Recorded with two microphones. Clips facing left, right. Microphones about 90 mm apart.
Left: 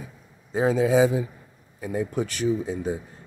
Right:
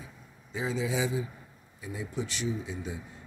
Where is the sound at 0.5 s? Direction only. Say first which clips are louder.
Left 11 dB; 50° left (ahead or behind).